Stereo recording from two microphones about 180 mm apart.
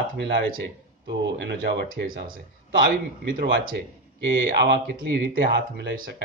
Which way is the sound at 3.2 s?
65° right (ahead or behind).